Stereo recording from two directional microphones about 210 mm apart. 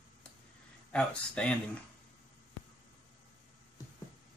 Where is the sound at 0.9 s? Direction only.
5° left (ahead or behind).